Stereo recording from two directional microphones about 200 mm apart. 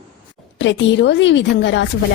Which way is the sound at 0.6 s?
65° left (ahead or behind).